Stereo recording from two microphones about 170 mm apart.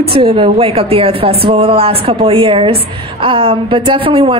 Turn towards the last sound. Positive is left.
turn(degrees=-30)  # may be behind; listen again after turning